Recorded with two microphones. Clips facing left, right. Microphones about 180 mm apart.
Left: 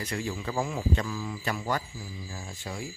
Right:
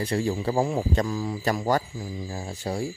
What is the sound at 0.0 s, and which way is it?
A man's voice, 35° right (ahead or behind).